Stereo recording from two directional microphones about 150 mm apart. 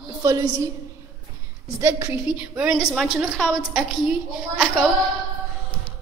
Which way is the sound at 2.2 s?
10° right (ahead or behind).